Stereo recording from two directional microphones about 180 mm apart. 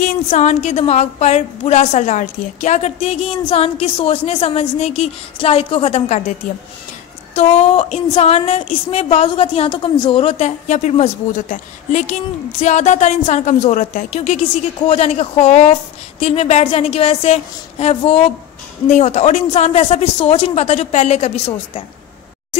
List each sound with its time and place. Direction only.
0.0 s a woman's voice: 40° left (ahead or behind)
7.3 s a woman's voice: 35° left (ahead or behind)